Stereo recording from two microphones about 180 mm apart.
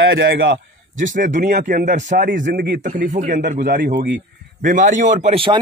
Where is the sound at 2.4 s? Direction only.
60° right (ahead or behind).